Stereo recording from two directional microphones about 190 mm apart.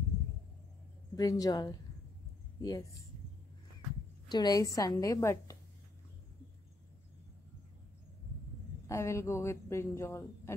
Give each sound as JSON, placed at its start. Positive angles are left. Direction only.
{"t": 1.1, "sound": "a woman's voice", "side_deg": 20}
{"t": 4.3, "sound": "a woman's voice", "side_deg": 20}
{"t": 8.8, "sound": "speech", "side_deg": 15}